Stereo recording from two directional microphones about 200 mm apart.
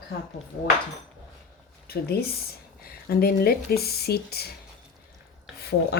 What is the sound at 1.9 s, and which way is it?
Speech, 55° left (ahead or behind).